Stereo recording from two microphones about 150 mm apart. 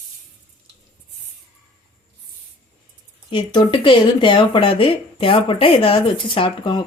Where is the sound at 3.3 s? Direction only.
35° left (ahead or behind).